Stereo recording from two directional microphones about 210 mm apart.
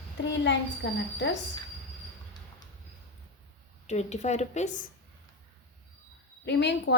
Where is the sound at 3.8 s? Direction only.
30° left (ahead or behind).